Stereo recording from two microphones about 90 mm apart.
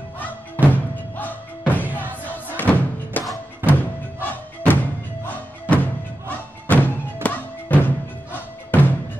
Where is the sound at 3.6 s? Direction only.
20° right (ahead or behind).